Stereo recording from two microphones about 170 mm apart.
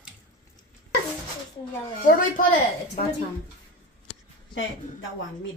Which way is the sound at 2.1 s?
55° left (ahead or behind).